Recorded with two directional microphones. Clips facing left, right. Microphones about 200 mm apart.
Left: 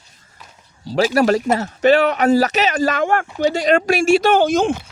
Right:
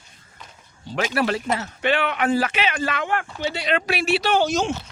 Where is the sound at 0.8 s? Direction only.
35° left (ahead or behind); by 4.7 s 50° left (ahead or behind).